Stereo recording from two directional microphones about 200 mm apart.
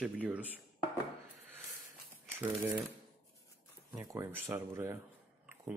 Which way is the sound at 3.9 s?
15° right (ahead or behind).